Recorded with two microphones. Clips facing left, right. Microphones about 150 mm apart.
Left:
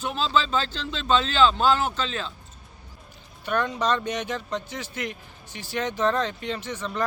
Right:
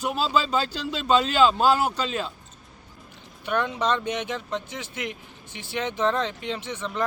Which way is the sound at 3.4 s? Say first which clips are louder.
Even; 15° right (ahead or behind).